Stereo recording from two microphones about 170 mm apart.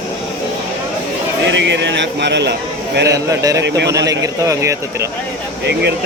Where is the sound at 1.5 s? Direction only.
90° right.